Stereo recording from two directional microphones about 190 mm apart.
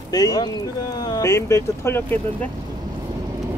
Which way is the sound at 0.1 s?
20° left (ahead or behind).